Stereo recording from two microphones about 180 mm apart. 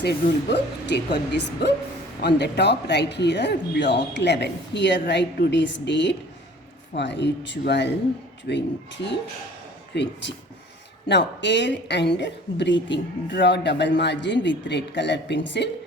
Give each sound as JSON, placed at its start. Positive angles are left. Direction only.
{"t": 0.0, "sound": "a woman's voice", "side_deg": 65}